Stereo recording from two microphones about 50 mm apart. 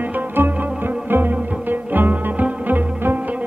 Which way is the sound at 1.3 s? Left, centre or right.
Right.